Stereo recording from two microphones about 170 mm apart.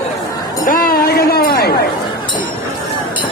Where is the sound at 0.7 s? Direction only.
60° left (ahead or behind).